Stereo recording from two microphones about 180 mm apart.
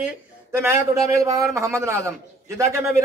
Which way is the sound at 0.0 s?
10° right (ahead or behind).